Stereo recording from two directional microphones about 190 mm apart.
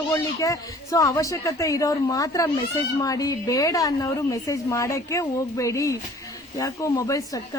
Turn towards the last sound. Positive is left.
turn(degrees=15)  # may be behind; listen again after turning